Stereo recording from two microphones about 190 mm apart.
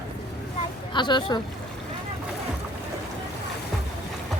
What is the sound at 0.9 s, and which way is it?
Speech, 25° left (ahead or behind).